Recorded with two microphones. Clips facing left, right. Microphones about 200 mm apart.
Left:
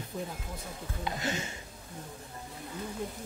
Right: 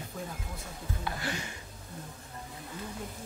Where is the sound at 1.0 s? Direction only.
20° left (ahead or behind).